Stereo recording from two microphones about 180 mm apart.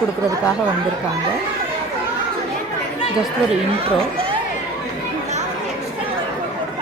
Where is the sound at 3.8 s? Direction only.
30° right (ahead or behind).